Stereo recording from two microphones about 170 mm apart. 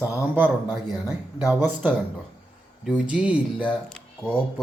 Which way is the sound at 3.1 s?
5° right (ahead or behind).